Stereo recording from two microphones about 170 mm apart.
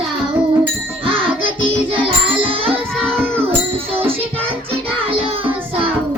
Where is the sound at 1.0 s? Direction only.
30° right (ahead or behind).